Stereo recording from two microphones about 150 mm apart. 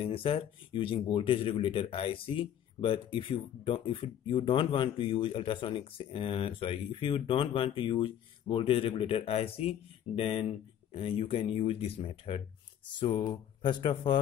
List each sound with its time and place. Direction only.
0.0 s speech: 35° left (ahead or behind)
13.3 s speech: 30° left (ahead or behind)